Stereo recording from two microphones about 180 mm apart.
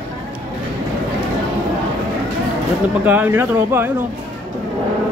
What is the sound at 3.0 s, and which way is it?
Speech, 10° right (ahead or behind).